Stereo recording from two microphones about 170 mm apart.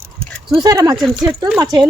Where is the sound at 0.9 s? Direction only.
Centre (ahead or behind).